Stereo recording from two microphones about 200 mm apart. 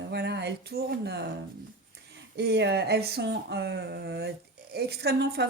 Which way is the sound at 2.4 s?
55° right (ahead or behind).